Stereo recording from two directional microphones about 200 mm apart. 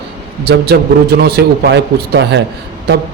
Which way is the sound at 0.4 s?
55° right (ahead or behind).